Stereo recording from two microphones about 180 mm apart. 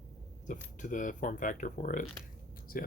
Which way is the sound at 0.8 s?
45° left (ahead or behind).